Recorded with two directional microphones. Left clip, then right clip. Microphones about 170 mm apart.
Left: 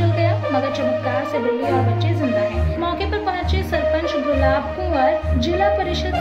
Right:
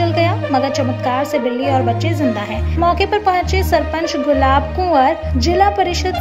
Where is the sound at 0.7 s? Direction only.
55° right (ahead or behind).